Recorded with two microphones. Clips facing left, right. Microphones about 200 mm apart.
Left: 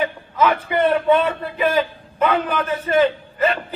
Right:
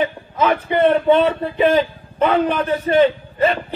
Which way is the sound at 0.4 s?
30° right (ahead or behind).